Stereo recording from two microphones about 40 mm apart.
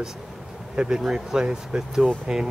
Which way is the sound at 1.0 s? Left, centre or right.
Centre.